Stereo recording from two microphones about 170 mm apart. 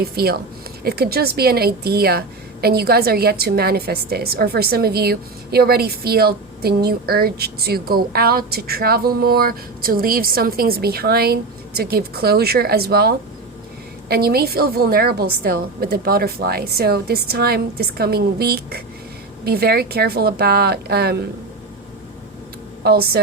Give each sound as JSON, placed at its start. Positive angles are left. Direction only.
{"t": 0.0, "sound": "a woman's voice", "side_deg": -65}
{"t": 22.8, "sound": "a woman's voice", "side_deg": -70}